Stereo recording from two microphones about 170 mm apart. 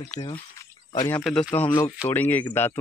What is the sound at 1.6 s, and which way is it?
Speech, 20° left (ahead or behind).